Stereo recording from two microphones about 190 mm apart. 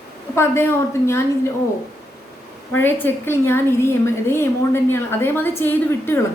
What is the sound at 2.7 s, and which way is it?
A woman's voice, 10° left (ahead or behind).